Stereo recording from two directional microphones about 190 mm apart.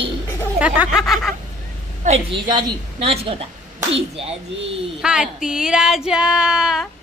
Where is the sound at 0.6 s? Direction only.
5° right (ahead or behind).